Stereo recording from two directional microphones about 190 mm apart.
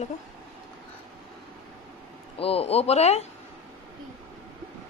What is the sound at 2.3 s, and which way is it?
Speech, 30° left (ahead or behind).